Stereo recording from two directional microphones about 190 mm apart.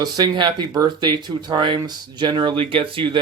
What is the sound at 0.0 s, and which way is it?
Speech, 25° right (ahead or behind).